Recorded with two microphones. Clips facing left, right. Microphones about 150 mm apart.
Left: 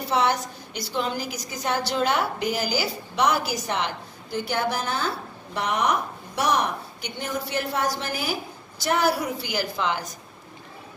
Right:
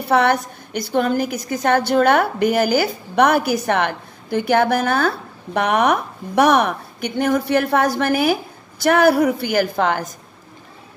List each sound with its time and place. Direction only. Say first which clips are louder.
0.1 s a woman's voice: right 7 dB; 60° right (ahead or behind)